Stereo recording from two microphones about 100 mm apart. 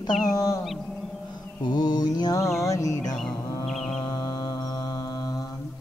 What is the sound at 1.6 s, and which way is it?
Female singing, 45° left (ahead or behind).